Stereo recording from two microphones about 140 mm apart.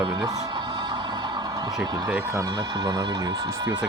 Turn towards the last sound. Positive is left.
turn(degrees=-30)  # may be behind; listen again after turning